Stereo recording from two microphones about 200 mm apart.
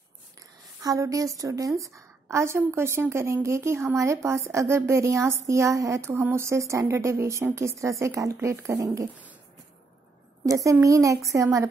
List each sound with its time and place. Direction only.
0.8 s speech: 15° right (ahead or behind)
10.4 s speech: 15° right (ahead or behind)